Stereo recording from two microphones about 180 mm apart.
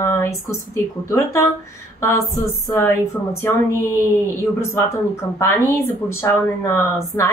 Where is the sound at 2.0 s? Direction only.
15° left (ahead or behind).